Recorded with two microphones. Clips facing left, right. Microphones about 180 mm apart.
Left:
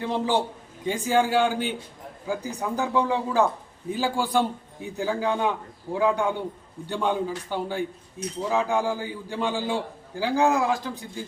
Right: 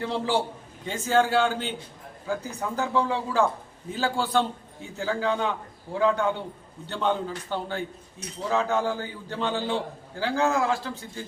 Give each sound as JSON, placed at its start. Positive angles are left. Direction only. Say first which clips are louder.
{"t": 0.0, "sound": "a man's voice", "louder": "left 1 dB", "side_deg": 15}